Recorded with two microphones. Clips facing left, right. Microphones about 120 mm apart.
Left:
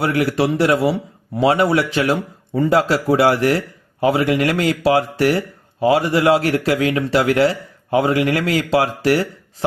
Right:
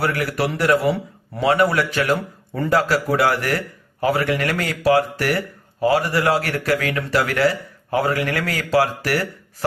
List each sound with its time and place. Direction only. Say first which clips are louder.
0.0 s a man's voice: left 4 dB; 25° left (ahead or behind)
2.7 s speech: left 2 dB; 25° left (ahead or behind)